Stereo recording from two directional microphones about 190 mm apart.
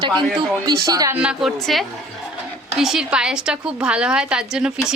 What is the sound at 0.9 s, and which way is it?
Speech, 20° right (ahead or behind).